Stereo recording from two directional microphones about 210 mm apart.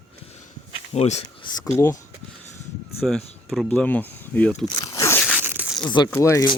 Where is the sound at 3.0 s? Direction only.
Centre (ahead or behind).